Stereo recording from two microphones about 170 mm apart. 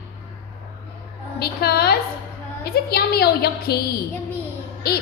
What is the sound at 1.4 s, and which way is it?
A woman's voice, 65° left (ahead or behind).